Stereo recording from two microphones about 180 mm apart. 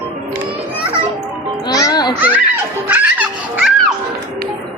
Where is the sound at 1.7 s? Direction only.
20° left (ahead or behind).